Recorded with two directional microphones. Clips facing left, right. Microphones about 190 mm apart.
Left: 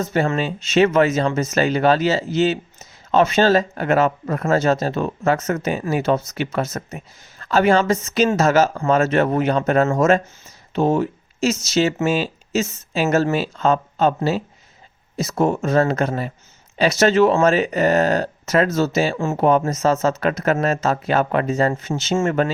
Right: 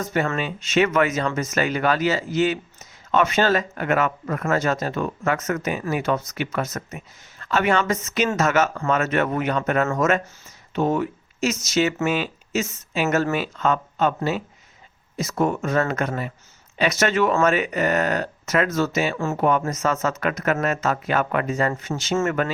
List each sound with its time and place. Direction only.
0.0 s a man's voice: 30° left (ahead or behind)